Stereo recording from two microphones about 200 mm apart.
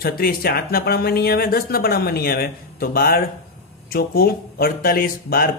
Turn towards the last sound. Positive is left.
turn(degrees=45)  # may be behind; listen again after turning